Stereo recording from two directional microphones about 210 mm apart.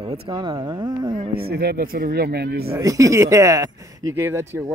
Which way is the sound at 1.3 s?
45° right (ahead or behind).